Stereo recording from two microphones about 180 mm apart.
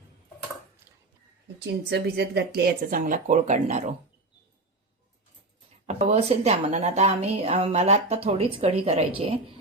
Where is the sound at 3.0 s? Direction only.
45° right (ahead or behind).